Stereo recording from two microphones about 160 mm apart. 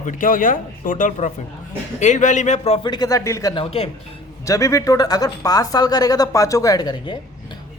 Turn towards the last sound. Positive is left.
turn(degrees=30)  # may be behind; listen again after turning